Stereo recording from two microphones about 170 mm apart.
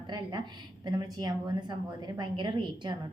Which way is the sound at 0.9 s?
20° right (ahead or behind).